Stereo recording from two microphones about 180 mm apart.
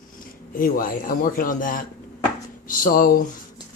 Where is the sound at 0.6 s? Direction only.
50° left (ahead or behind).